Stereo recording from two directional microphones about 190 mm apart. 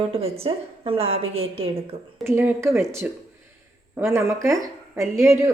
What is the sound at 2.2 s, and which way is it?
Speech, 10° right (ahead or behind).